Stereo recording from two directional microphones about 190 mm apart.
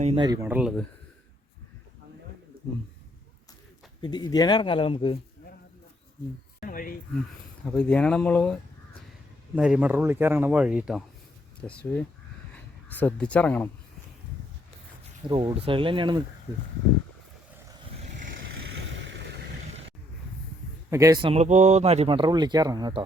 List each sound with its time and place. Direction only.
0.0 s speech: 30° right (ahead or behind)
0.3 s speech: 10° right (ahead or behind)
4.0 s speech: 20° left (ahead or behind)
6.6 s speech: 50° left (ahead or behind)
7.6 s speech: 5° left (ahead or behind)
9.6 s speech: 5° right (ahead or behind)
15.3 s speech: 25° right (ahead or behind)
20.9 s speech: 15° right (ahead or behind)